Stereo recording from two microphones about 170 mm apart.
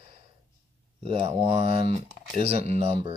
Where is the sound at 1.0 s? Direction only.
30° right (ahead or behind).